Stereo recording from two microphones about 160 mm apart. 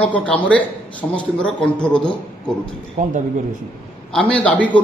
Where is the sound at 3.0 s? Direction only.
50° right (ahead or behind).